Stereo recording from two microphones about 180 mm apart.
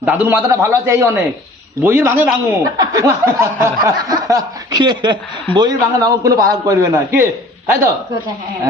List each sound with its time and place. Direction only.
0.0 s a man's voice: 10° right (ahead or behind)